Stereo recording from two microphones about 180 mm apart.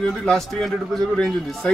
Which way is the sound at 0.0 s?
Centre (ahead or behind).